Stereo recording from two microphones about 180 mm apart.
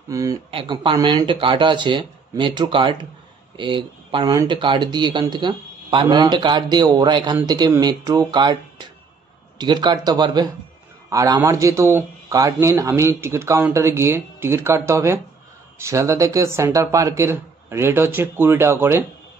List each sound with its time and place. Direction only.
0.1 s speech: 20° right (ahead or behind)
0.5 s a man's voice: 30° right (ahead or behind); by 19.0 s 15° right (ahead or behind)